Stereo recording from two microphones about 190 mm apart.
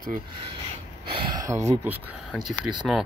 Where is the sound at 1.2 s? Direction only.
25° right (ahead or behind).